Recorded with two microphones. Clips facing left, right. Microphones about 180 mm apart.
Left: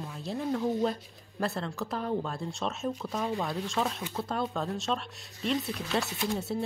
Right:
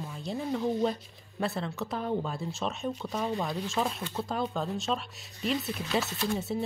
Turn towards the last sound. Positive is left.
turn(degrees=0)  # may be behind; listen again after turning